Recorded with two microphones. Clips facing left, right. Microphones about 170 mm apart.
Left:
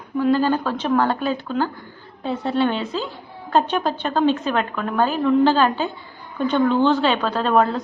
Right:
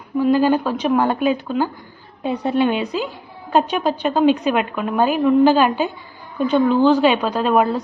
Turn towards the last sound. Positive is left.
turn(degrees=-10)  # may be behind; listen again after turning